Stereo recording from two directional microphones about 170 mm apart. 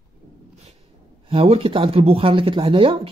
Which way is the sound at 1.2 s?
35° right (ahead or behind).